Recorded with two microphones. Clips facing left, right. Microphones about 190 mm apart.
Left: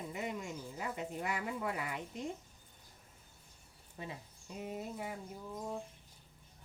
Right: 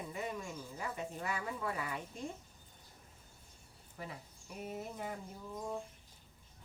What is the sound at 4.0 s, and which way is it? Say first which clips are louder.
Speech: left 1 dB; 20° left (ahead or behind).